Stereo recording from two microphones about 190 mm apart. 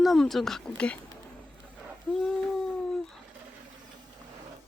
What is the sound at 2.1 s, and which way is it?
Speech, 5° left (ahead or behind).